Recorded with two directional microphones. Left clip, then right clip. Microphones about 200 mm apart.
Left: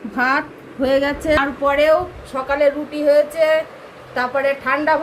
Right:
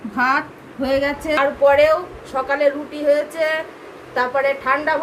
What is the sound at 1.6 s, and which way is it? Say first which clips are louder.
A woman's voice: right 2 dB; 30° right (ahead or behind).